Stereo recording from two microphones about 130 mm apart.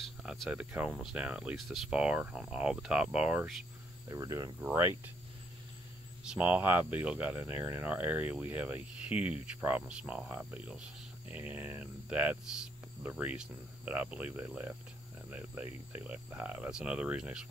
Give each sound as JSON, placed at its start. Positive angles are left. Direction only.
{"t": 0.0, "sound": "cricket", "side_deg": 0}
{"t": 0.7, "sound": "speech", "side_deg": -10}
{"t": 4.1, "sound": "speech", "side_deg": -25}
{"t": 6.2, "sound": "speech", "side_deg": -10}